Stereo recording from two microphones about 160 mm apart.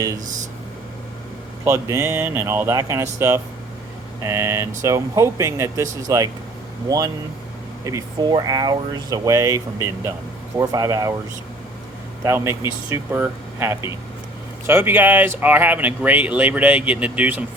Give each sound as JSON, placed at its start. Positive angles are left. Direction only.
{"t": 1.6, "sound": "speech", "side_deg": -15}
{"t": 12.2, "sound": "speech", "side_deg": -15}